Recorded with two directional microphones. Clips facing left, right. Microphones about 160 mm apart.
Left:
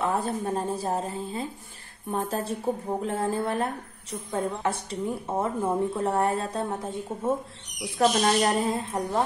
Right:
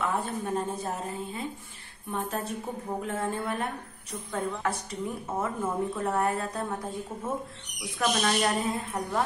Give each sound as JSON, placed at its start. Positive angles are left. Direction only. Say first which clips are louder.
{"t": 0.0, "sound": "a woman's voice", "louder": "left 3 dB", "side_deg": 35}